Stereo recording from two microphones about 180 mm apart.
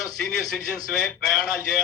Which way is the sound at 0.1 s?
5° left (ahead or behind).